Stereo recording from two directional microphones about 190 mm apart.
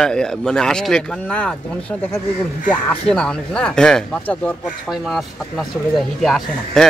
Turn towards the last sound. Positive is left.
turn(degrees=0)  # may be behind; listen again after turning